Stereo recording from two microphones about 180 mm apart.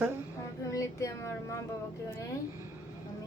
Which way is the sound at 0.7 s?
15° left (ahead or behind).